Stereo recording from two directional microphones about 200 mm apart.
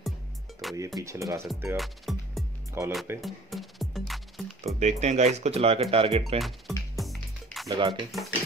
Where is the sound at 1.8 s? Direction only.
Centre (ahead or behind).